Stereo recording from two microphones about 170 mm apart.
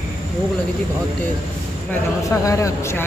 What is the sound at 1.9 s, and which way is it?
A man's voice, 20° left (ahead or behind).